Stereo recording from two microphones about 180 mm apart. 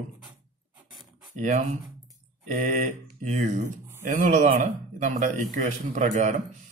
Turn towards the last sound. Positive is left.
turn(degrees=-45)  # may be behind; listen again after turning